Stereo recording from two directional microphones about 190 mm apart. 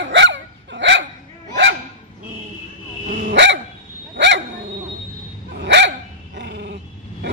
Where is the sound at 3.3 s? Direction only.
70° right (ahead or behind).